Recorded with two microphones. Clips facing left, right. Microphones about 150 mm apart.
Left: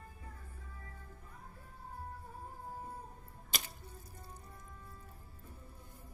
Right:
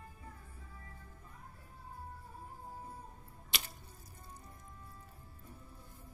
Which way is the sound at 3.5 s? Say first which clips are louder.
Left 1 dB; 45° left (ahead or behind).